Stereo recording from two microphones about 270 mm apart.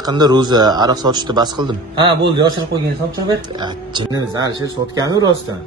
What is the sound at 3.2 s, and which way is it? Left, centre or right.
A man's voice, centre.